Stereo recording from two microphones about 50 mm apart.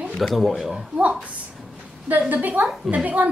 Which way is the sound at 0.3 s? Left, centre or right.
Centre.